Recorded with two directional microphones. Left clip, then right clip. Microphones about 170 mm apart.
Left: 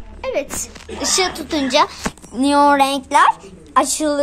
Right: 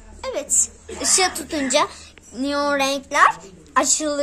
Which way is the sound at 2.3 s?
30° left (ahead or behind).